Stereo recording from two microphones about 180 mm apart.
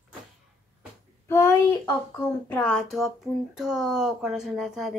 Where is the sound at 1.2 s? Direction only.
15° left (ahead or behind).